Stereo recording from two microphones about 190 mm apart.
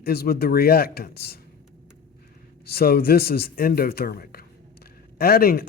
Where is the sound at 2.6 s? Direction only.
55° left (ahead or behind).